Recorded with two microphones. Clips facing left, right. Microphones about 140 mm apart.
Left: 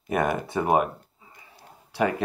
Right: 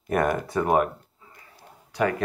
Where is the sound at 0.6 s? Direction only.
15° left (ahead or behind).